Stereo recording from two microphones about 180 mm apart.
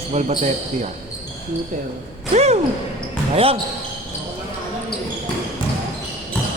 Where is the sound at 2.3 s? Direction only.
35° right (ahead or behind).